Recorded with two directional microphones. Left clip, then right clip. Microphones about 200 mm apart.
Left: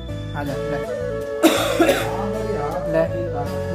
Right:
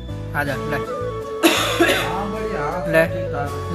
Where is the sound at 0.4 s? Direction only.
Centre (ahead or behind).